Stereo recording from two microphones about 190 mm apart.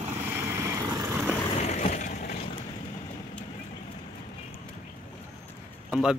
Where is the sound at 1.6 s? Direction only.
35° left (ahead or behind).